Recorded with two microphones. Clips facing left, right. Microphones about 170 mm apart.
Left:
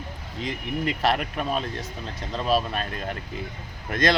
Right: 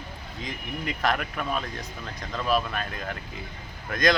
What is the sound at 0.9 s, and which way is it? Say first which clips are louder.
Speech: left 2 dB; 25° left (ahead or behind).